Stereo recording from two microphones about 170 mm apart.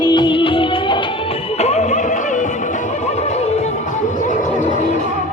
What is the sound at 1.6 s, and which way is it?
Music, 40° left (ahead or behind).